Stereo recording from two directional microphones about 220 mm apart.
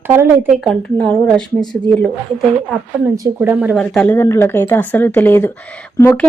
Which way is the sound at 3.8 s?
5° left (ahead or behind).